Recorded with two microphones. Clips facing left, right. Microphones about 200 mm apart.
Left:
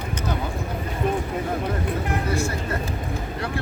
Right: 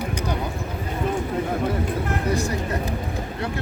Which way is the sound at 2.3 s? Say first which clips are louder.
Right 1 dB; 15° right (ahead or behind).